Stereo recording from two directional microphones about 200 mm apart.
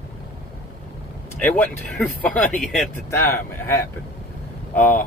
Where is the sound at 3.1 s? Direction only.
10° left (ahead or behind).